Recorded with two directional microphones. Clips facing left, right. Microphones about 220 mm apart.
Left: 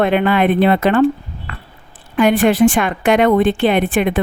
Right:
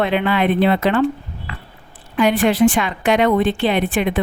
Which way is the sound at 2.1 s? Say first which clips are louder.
Left 3 dB; 50° left (ahead or behind).